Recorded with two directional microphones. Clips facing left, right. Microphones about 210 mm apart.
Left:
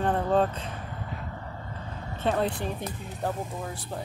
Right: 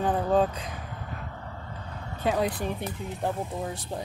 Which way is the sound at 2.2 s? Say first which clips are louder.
Even; 10° right (ahead or behind).